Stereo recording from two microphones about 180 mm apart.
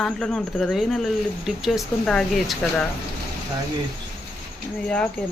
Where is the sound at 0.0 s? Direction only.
Centre (ahead or behind).